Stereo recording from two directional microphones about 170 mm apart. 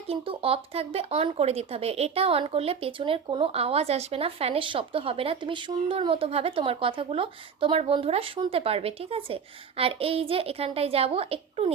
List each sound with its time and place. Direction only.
0.1 s speech: 35° right (ahead or behind)